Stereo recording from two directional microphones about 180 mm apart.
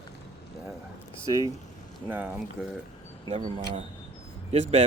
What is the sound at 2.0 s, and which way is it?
Speech, 10° right (ahead or behind).